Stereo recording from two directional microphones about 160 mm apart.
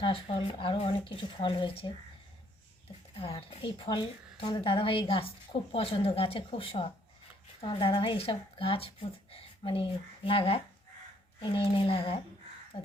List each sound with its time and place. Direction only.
0.0 s a woman's voice: 35° left (ahead or behind)
3.2 s a woman's voice: 35° left (ahead or behind)
9.3 s a sound: 35° left (ahead or behind)
10.2 s a woman's voice: 35° left (ahead or behind)